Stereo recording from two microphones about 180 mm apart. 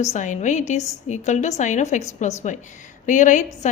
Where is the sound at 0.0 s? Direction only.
40° left (ahead or behind).